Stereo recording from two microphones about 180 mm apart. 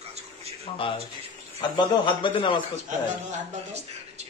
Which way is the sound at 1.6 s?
25° left (ahead or behind).